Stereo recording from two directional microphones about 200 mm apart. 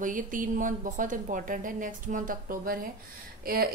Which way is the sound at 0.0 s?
40° right (ahead or behind).